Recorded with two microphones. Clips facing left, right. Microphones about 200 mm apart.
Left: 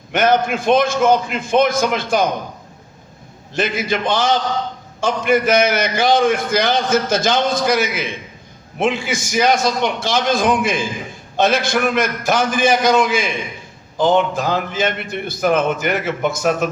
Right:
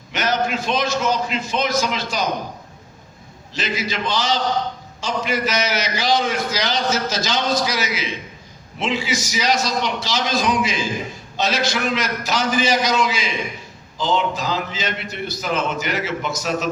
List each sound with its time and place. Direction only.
0.1 s a man's voice: 55° left (ahead or behind)
3.5 s a man's voice: 55° left (ahead or behind)